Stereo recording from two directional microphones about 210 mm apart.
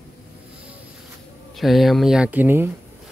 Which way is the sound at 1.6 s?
Centre (ahead or behind).